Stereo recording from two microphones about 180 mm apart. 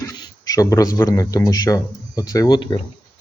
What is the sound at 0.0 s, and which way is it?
Speech, 20° left (ahead or behind).